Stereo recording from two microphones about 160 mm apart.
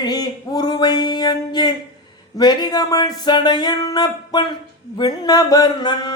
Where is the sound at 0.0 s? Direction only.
25° left (ahead or behind).